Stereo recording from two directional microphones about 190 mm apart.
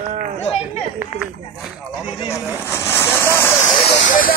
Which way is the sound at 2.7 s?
15° left (ahead or behind).